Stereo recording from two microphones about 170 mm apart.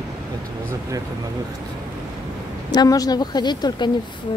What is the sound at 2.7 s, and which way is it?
Speech, 25° left (ahead or behind).